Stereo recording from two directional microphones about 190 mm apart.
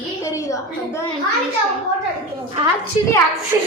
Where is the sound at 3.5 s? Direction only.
20° right (ahead or behind).